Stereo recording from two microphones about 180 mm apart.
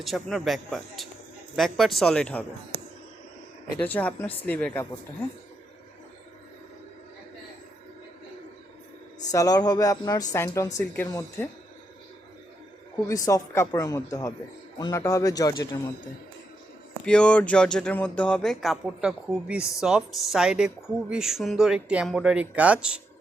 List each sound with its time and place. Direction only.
0.0 s speech: centre (ahead or behind)
3.8 s speech: 10° left (ahead or behind)
9.3 s speech: 20° left (ahead or behind)
13.1 s speech: 20° left (ahead or behind)
17.1 s speech: 5° left (ahead or behind)